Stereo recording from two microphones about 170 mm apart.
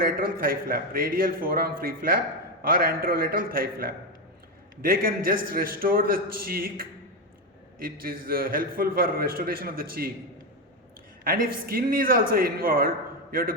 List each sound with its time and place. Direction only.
0.0 s a man's voice: 60° right (ahead or behind)
11.2 s a man's voice: 55° right (ahead or behind)